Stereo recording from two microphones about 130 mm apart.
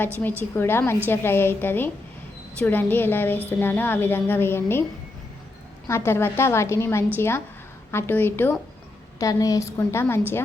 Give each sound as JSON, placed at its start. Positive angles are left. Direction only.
{"t": 0.0, "sound": "speech", "side_deg": 15}
{"t": 5.9, "sound": "a woman's voice", "side_deg": 20}
{"t": 9.1, "sound": "a woman's voice", "side_deg": 25}